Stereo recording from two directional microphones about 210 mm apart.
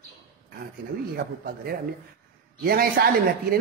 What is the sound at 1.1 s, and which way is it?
A man's voice, 45° right (ahead or behind).